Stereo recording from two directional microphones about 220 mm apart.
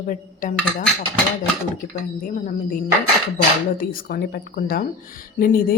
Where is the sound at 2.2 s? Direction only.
40° left (ahead or behind).